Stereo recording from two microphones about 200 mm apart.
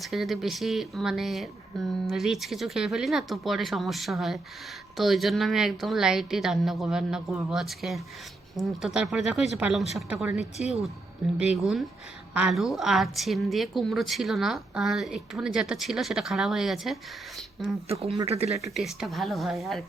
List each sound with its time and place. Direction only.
0.0 s a woman's voice: centre (ahead or behind)
17.8 s speech: 30° right (ahead or behind)
18.7 s a woman's voice: centre (ahead or behind)